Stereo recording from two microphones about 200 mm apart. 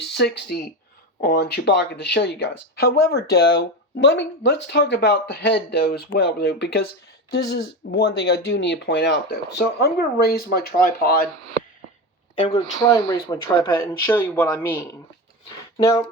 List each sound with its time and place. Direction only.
0.0 s speech: 55° left (ahead or behind)
3.9 s speech: 70° left (ahead or behind); by 11.3 s 50° left (ahead or behind)
12.5 s speech: 20° left (ahead or behind)
14.1 s speech: 10° left (ahead or behind)